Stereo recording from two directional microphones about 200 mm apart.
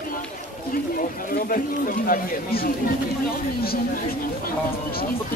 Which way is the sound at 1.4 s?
45° left (ahead or behind).